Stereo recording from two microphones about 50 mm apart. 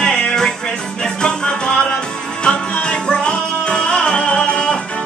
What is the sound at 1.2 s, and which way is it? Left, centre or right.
Music, centre.